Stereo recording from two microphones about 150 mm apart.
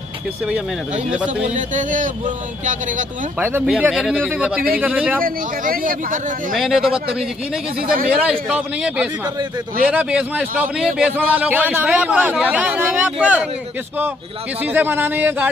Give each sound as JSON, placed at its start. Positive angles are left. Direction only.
{"t": 1.1, "sound": "a man's voice", "side_deg": -10}
{"t": 1.4, "sound": "a man's voice", "side_deg": -55}
{"t": 3.3, "sound": "a man's voice", "side_deg": -15}
{"t": 5.2, "sound": "speech", "side_deg": -70}
{"t": 6.5, "sound": "speech", "side_deg": 0}
{"t": 7.8, "sound": "speech", "side_deg": -70}
{"t": 8.3, "sound": "a man's voice", "side_deg": -5}
{"t": 14.6, "sound": "a man's voice", "side_deg": -10}